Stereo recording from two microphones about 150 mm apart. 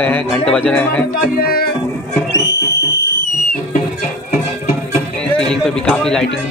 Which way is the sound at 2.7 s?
90° left.